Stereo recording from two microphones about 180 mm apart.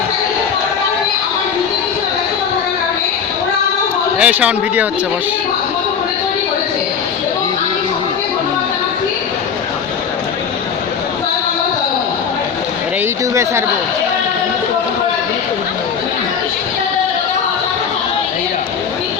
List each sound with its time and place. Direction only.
4.2 s speech: 10° right (ahead or behind)
13.3 s speech: 15° right (ahead or behind)